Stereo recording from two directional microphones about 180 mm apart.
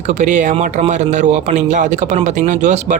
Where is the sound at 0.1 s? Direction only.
40° right (ahead or behind).